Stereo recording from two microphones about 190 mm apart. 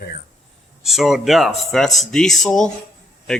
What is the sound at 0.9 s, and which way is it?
A man's voice, centre (ahead or behind).